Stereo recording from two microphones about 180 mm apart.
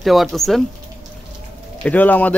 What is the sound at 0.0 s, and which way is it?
Speech, centre (ahead or behind).